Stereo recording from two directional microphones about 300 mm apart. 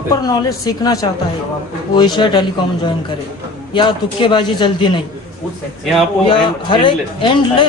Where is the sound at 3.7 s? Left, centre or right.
Centre.